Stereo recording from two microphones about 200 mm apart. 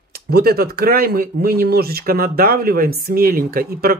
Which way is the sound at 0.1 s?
50° right (ahead or behind).